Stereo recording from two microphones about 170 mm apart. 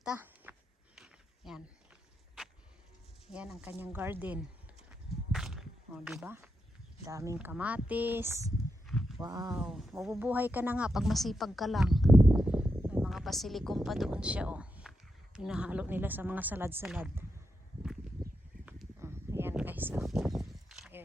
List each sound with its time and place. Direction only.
0.0 s a sound: 10° right (ahead or behind)
3.2 s speech: 5° right (ahead or behind)
4.9 s walk: 5° right (ahead or behind)
7.0 s speech: 20° right (ahead or behind)
7.3 s speech: 10° right (ahead or behind)
8.9 s a sound: centre (ahead or behind)
9.1 s speech: 20° right (ahead or behind)
9.5 s speech: 5° right (ahead or behind)
18.6 s a sound: 10° right (ahead or behind)